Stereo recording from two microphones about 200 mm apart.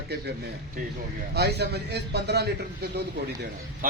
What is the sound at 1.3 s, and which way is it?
A man's voice, 55° right (ahead or behind).